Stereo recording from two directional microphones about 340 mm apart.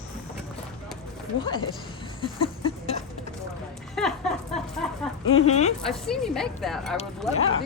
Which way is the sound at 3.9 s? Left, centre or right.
Centre.